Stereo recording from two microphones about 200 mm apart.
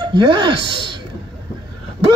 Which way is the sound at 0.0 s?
25° right (ahead or behind).